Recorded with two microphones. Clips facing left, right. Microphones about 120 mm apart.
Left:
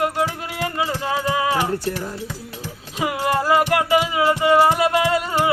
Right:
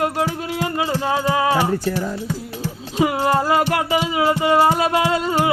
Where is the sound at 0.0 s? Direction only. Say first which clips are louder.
Right 1 dB; 25° right (ahead or behind).